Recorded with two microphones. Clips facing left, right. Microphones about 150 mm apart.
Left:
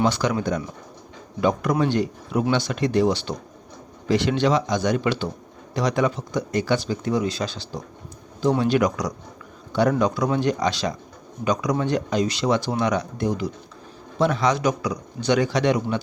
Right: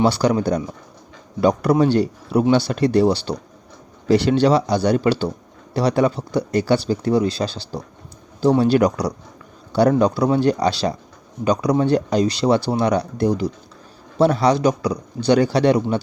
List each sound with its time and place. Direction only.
0.0 s speech: 35° right (ahead or behind)